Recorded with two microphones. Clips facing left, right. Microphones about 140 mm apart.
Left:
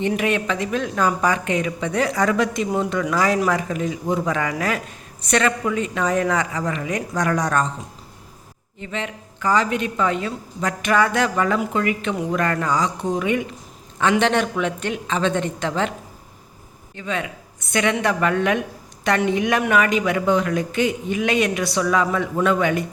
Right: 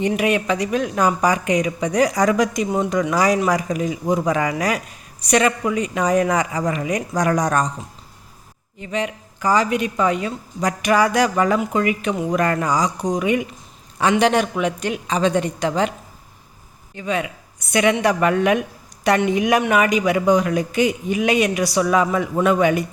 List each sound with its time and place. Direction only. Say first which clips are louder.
0.2 s a woman's voice: right 3 dB; 10° right (ahead or behind)
2.6 s speech: right 1 dB; centre (ahead or behind)
2.9 s a woman's voice: right 4 dB; 15° right (ahead or behind)
8.8 s a woman's voice: right 4 dB; 10° right (ahead or behind)
16.9 s a woman's voice: right 3 dB; 15° right (ahead or behind)